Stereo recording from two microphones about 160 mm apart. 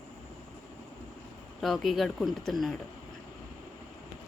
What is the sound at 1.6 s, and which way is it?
Speech, centre (ahead or behind).